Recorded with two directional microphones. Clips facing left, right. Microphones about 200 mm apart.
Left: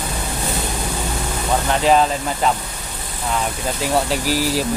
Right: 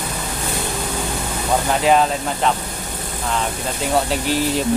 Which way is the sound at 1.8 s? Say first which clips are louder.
Left 1 dB; centre (ahead or behind).